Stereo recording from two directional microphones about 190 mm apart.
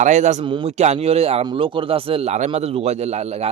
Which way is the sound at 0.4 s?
25° right (ahead or behind).